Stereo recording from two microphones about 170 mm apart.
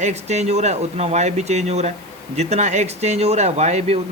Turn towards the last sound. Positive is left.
turn(degrees=-40)  # may be behind; listen again after turning